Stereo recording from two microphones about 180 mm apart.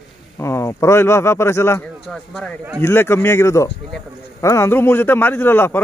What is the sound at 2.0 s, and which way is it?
A man's voice, 5° left (ahead or behind).